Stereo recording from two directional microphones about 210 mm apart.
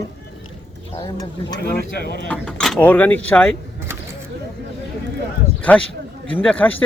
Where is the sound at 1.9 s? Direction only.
50° left (ahead or behind).